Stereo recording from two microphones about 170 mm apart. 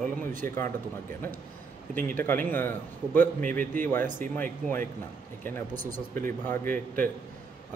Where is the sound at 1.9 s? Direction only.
10° left (ahead or behind).